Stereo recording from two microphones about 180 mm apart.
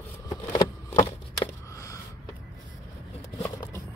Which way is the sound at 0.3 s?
20° left (ahead or behind).